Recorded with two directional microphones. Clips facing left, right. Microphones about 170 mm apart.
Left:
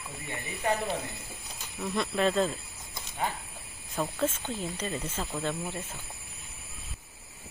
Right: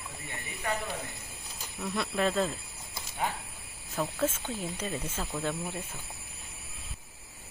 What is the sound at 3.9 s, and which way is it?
Speech, 5° right (ahead or behind).